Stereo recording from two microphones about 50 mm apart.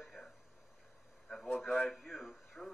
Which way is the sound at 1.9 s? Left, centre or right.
Centre.